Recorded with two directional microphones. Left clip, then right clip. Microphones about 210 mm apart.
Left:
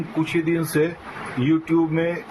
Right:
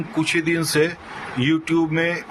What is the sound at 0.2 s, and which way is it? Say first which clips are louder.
Speech: right 2 dB; 50° right (ahead or behind).